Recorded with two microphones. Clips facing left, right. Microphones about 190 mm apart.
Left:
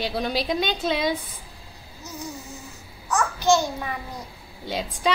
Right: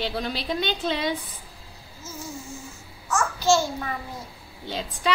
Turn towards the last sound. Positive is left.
turn(degrees=15)  # may be behind; listen again after turning